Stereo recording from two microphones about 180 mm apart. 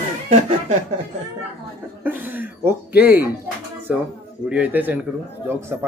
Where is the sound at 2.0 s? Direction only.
10° right (ahead or behind).